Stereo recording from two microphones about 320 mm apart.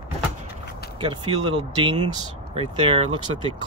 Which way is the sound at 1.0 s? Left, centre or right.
Centre.